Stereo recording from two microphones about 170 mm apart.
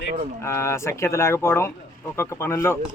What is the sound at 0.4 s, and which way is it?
Speech, 15° left (ahead or behind).